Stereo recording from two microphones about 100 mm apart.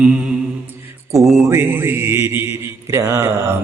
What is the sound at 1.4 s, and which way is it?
Speech, 25° right (ahead or behind).